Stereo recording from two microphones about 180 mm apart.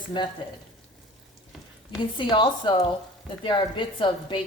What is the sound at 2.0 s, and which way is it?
A woman's voice, 25° left (ahead or behind).